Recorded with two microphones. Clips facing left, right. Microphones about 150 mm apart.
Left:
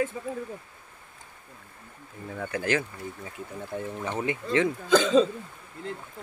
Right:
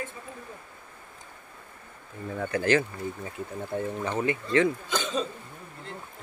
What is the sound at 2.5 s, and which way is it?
Speech, 10° left (ahead or behind).